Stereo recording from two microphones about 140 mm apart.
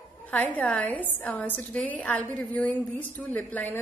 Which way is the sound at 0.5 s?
10° left (ahead or behind).